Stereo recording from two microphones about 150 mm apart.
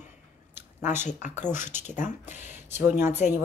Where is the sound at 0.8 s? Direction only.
55° left (ahead or behind).